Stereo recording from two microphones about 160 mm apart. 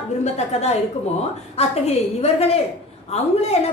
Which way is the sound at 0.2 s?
40° left (ahead or behind).